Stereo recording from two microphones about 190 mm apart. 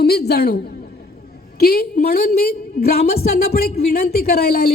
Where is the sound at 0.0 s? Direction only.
55° left (ahead or behind).